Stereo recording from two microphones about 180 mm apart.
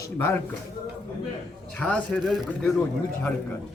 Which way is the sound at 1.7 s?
5° left (ahead or behind).